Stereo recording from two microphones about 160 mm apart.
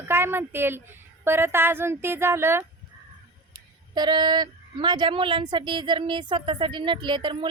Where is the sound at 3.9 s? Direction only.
25° right (ahead or behind).